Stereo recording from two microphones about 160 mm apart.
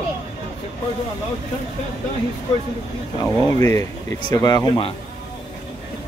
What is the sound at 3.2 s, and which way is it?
Speech, 20° left (ahead or behind).